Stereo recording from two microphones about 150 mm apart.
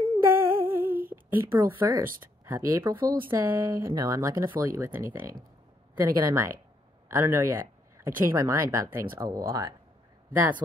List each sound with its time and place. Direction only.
0.2 s humming: 15° right (ahead or behind)
1.0 s speech: 15° right (ahead or behind)